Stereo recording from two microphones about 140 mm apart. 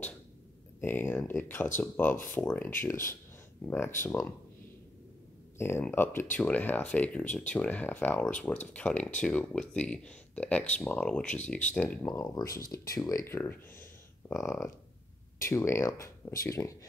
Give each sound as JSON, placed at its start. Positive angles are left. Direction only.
{"t": 0.7, "sound": "speech", "side_deg": 15}
{"t": 5.6, "sound": "speech", "side_deg": 15}